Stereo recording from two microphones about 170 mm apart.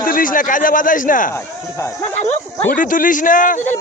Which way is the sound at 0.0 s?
55° left (ahead or behind).